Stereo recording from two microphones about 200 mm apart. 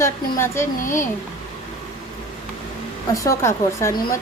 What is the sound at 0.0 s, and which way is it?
Speech, 15° left (ahead or behind).